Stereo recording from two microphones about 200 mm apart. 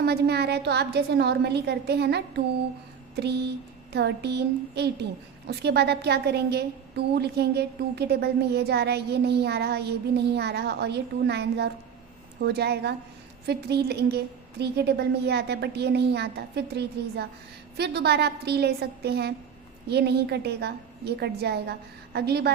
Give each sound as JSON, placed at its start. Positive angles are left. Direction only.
{"t": 0.0, "sound": "a woman's voice", "side_deg": -55}